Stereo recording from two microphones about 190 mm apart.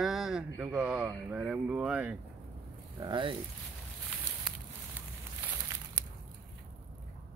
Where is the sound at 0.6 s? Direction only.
5° right (ahead or behind).